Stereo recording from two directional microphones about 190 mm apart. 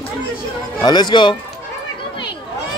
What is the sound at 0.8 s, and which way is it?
Speech, 20° left (ahead or behind).